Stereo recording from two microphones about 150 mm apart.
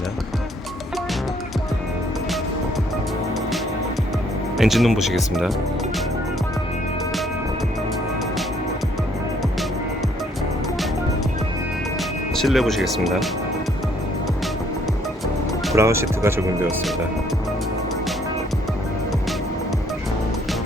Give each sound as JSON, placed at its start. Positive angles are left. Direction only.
{"t": 4.5, "sound": "speech", "side_deg": 0}
{"t": 12.4, "sound": "speech", "side_deg": 0}
{"t": 15.7, "sound": "speech", "side_deg": -20}